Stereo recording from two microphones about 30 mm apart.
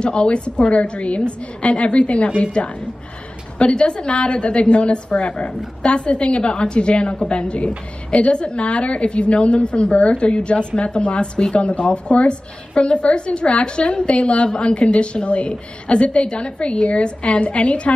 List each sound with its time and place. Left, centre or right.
0.0 s a woman's voice: left